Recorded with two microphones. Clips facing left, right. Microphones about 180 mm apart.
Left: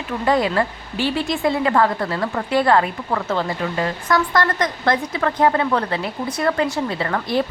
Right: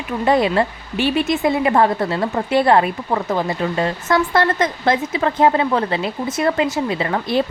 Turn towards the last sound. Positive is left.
turn(degrees=-20)  # may be behind; listen again after turning